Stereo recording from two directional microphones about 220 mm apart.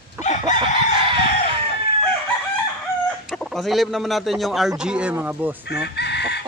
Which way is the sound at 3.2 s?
Centre (ahead or behind).